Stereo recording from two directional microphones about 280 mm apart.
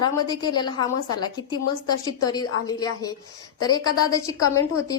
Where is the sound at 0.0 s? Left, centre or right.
Centre.